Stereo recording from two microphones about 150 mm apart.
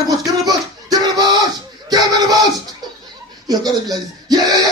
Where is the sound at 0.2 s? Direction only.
25° right (ahead or behind).